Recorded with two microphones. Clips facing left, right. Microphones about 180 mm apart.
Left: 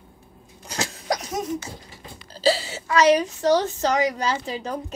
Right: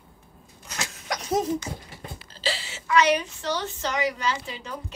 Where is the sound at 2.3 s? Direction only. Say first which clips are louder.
Left 11 dB; 40° left (ahead or behind).